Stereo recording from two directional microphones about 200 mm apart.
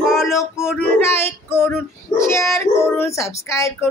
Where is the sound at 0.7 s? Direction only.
10° left (ahead or behind).